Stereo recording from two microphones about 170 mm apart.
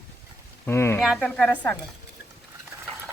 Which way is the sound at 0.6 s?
15° left (ahead or behind).